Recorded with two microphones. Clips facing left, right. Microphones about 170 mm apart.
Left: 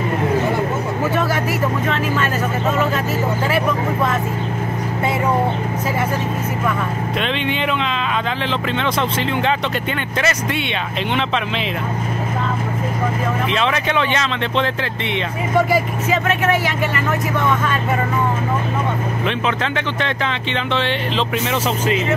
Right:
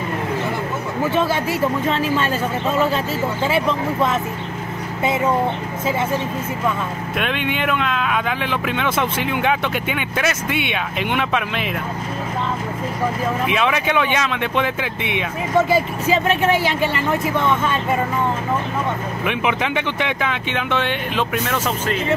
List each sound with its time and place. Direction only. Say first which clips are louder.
3.4 s speech: right 2 dB; 20° right (ahead or behind)
7.2 s speech: even; 5° right (ahead or behind)
13.5 s speech: right 1 dB; 10° right (ahead or behind)
15.7 s speech: even; 30° right (ahead or behind)
19.2 s speech: right 2 dB; 15° right (ahead or behind)
21.5 s speech: left 3 dB; 5° left (ahead or behind)